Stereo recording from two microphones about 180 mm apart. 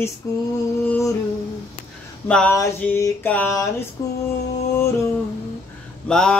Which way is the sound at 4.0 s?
20° left (ahead or behind).